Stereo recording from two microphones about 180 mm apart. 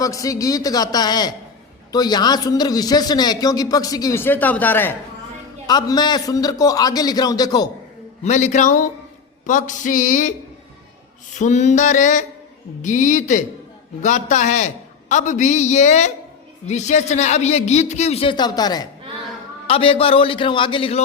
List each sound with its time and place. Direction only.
0.0 s a man's voice: 20° left (ahead or behind)
5.6 s a man's voice: 20° left (ahead or behind)
8.2 s a man's voice: 40° left (ahead or behind)
9.5 s a sound: 45° left (ahead or behind)
11.3 s a man's voice: 40° left (ahead or behind)
12.8 s a sound: 45° left (ahead or behind)
14.0 s a man's voice: 40° left (ahead or behind)